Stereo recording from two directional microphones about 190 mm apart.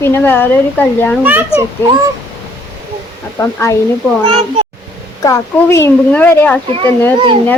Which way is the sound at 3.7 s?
15° left (ahead or behind).